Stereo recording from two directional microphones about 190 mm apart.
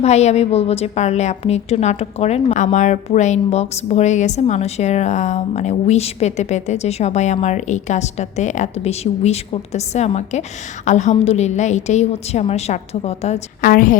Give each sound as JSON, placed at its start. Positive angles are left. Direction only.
{"t": 0.0, "sound": "a woman's voice", "side_deg": 35}